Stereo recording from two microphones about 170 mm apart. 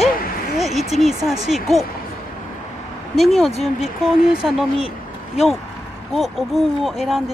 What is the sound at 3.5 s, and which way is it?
Speech, 35° left (ahead or behind).